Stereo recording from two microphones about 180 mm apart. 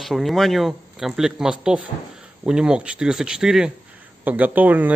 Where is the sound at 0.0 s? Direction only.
Centre (ahead or behind).